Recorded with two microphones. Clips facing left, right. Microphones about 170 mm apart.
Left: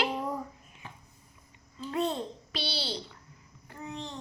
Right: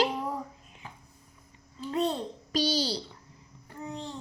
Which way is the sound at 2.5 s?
40° right (ahead or behind).